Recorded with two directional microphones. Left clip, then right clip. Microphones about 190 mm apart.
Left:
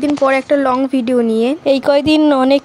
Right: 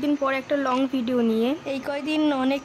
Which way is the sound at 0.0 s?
35° left (ahead or behind).